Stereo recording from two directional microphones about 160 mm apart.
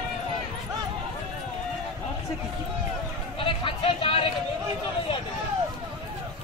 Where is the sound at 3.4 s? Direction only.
35° left (ahead or behind).